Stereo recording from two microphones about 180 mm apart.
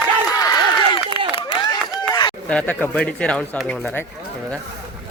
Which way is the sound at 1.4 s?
25° left (ahead or behind).